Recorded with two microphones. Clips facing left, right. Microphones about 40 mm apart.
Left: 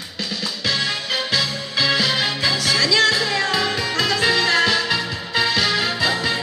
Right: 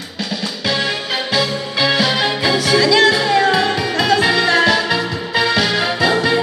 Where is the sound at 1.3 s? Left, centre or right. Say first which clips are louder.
Right 4 dB; centre.